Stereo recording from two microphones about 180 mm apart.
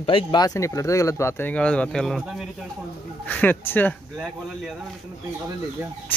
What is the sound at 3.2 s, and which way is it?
Speech, 10° left (ahead or behind).